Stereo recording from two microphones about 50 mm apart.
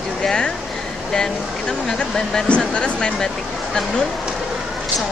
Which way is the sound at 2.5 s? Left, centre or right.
Left.